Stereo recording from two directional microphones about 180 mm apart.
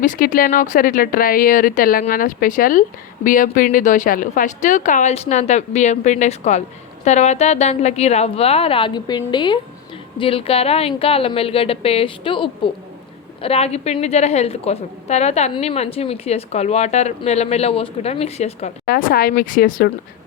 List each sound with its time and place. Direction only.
0.0 s a woman's voice: 45° left (ahead or behind)
18.9 s speech: 50° left (ahead or behind)